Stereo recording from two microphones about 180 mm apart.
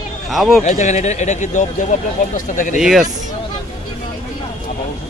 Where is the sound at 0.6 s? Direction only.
40° left (ahead or behind).